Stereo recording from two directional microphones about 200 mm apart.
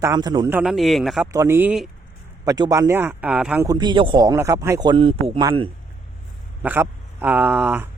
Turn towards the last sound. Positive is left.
turn(degrees=-10)  # may be behind; listen again after turning